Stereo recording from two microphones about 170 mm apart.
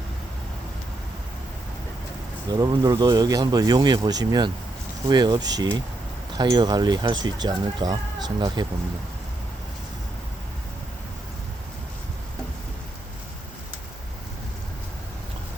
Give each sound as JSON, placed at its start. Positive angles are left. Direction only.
{"t": 2.5, "sound": "speech", "side_deg": -25}